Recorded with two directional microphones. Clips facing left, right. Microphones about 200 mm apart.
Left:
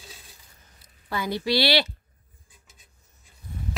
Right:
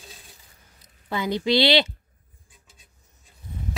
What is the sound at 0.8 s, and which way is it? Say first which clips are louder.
A woman's voice: right 2 dB; 20° right (ahead or behind).